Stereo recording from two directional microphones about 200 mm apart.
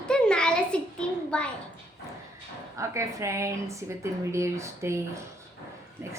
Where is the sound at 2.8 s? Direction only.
15° right (ahead or behind).